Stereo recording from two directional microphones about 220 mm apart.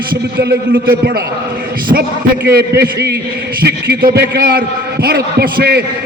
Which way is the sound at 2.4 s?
45° right (ahead or behind).